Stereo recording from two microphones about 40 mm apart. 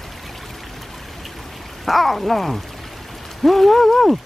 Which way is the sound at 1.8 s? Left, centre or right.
Centre.